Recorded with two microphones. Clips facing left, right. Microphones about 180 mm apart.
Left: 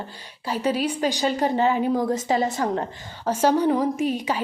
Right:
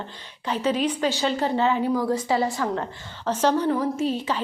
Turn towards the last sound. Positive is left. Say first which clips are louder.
# left 1 dB
turn(degrees=10)  # may be behind; listen again after turning